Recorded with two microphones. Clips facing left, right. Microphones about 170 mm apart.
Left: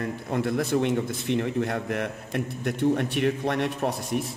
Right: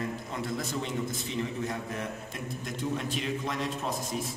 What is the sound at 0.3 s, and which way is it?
A man's voice, 60° left (ahead or behind).